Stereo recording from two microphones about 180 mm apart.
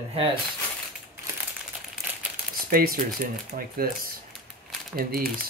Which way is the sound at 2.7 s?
55° right (ahead or behind).